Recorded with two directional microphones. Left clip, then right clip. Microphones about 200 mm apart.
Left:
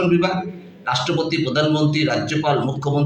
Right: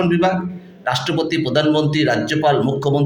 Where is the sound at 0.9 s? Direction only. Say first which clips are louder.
Right 1 dB; 55° right (ahead or behind).